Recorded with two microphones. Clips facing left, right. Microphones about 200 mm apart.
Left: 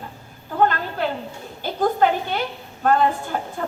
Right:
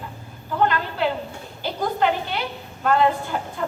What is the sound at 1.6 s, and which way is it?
A woman's voice, 50° left (ahead or behind).